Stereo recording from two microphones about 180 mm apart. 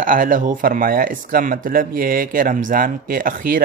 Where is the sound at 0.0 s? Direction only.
50° right (ahead or behind).